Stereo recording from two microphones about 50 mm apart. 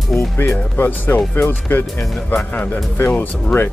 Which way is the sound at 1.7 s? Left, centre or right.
Left.